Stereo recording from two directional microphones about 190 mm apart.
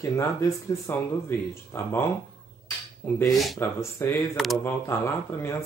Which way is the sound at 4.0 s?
15° left (ahead or behind).